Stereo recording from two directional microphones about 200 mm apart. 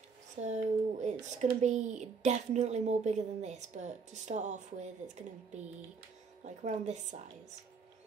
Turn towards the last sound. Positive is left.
turn(degrees=-35)  # may be behind; listen again after turning